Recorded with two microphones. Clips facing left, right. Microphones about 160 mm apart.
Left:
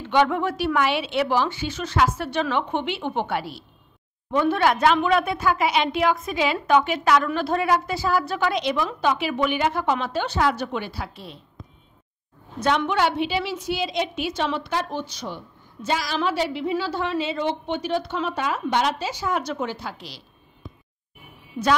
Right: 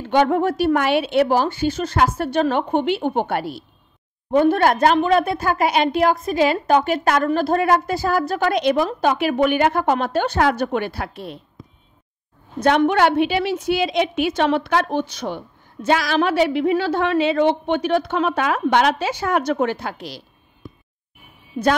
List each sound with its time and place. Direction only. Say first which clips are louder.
0.0 s a woman's voice: right 4 dB; 45° right (ahead or behind)
12.6 s a woman's voice: right 6 dB; 60° right (ahead or behind)